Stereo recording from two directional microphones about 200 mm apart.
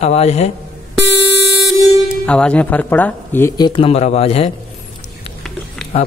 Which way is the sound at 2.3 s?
5° left (ahead or behind).